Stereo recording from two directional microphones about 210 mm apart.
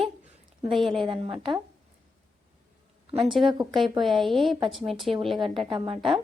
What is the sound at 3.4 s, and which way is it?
Speech, 20° right (ahead or behind).